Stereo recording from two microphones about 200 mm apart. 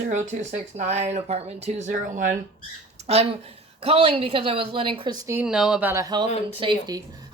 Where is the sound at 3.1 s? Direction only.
30° right (ahead or behind).